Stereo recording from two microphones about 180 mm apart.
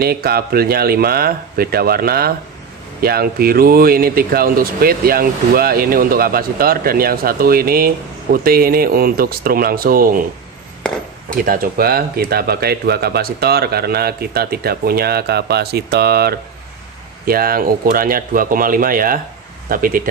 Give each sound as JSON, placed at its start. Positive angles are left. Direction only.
{"t": 0.0, "sound": "speech", "side_deg": -60}
{"t": 11.4, "sound": "speech", "side_deg": -55}